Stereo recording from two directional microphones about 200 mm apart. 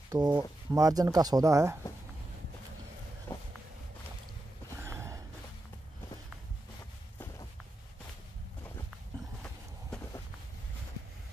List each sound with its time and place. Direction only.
0.1 s speech: 20° right (ahead or behind)
3.3 s a sound: 10° left (ahead or behind)
4.7 s sigh: 15° right (ahead or behind)